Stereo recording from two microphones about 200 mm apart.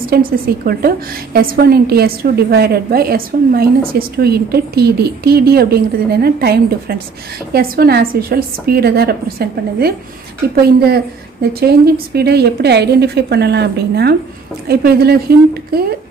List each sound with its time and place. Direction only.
0.0 s a woman's voice: 50° right (ahead or behind)